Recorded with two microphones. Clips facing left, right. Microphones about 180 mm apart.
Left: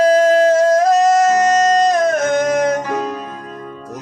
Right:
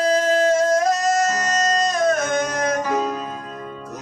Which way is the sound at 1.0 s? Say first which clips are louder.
Left 8 dB; 65° left (ahead or behind).